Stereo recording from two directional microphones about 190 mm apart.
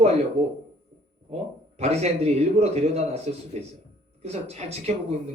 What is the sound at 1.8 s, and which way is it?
A man's voice, 35° right (ahead or behind).